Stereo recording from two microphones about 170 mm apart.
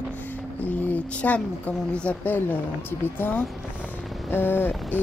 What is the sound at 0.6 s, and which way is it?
Music, 10° left (ahead or behind).